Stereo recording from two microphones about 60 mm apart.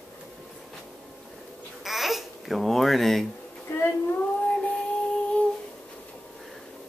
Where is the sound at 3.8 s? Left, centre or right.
Left.